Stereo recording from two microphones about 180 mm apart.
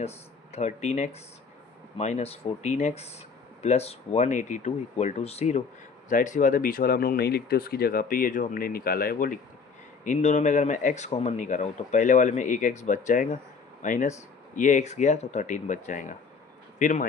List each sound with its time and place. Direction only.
0.5 s speech: 40° left (ahead or behind)